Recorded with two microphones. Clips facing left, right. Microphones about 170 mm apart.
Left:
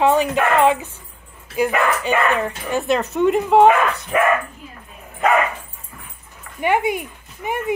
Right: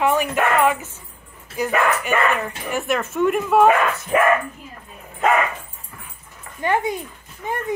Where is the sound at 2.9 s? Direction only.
35° left (ahead or behind).